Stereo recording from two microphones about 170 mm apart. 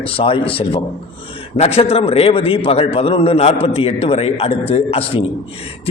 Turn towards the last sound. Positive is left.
turn(degrees=35)  # may be behind; listen again after turning